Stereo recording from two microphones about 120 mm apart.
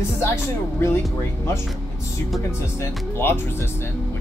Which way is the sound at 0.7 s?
20° left (ahead or behind).